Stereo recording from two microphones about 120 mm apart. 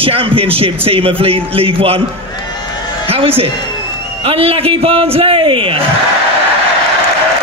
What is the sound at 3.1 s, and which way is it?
A woman's voice, 50° right (ahead or behind).